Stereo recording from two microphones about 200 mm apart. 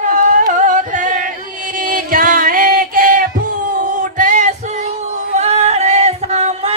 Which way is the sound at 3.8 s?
40° right (ahead or behind).